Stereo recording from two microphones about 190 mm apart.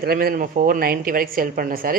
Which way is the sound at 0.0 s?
50° right (ahead or behind).